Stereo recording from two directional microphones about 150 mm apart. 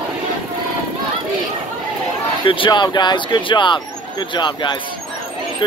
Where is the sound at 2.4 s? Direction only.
35° left (ahead or behind).